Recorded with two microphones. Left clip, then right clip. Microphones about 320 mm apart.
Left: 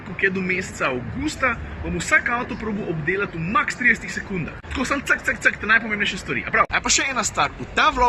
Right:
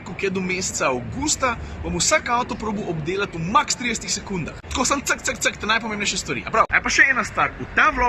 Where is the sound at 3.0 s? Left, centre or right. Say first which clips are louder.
Left 3 dB; centre.